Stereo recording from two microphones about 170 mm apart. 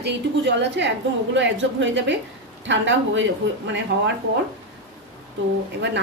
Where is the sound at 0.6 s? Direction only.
90° right.